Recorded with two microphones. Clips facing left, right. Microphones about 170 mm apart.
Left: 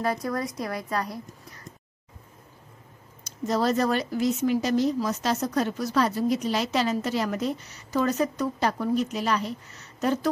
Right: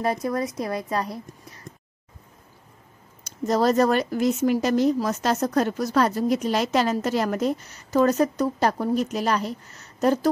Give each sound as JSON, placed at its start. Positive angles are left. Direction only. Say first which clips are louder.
{"t": 0.0, "sound": "a woman's voice", "louder": "right 3 dB", "side_deg": -25}
{"t": 3.3, "sound": "speech", "louder": "right 4 dB", "side_deg": -45}